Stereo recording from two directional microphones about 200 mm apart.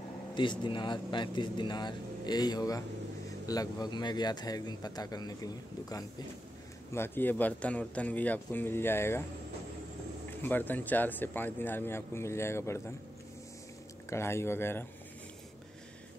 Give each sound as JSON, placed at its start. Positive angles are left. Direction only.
{"t": 0.3, "sound": "a man's voice", "side_deg": 25}
{"t": 10.4, "sound": "speech", "side_deg": 10}
{"t": 14.0, "sound": "speech", "side_deg": 15}